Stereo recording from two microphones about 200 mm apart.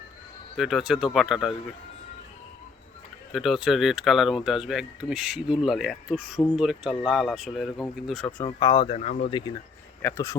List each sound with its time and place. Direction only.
0.5 s speech: centre (ahead or behind)
3.3 s speech: centre (ahead or behind)
8.4 s speech: 25° left (ahead or behind)
10.0 s speech: 15° left (ahead or behind)